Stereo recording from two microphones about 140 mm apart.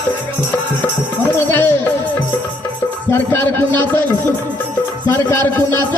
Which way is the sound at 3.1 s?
15° left (ahead or behind).